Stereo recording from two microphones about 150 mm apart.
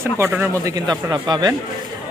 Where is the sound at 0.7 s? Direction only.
25° right (ahead or behind).